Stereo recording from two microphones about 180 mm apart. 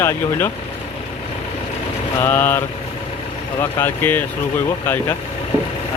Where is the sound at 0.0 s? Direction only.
15° left (ahead or behind).